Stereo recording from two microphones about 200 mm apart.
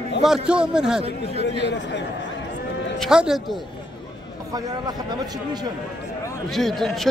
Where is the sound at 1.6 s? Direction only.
60° left (ahead or behind).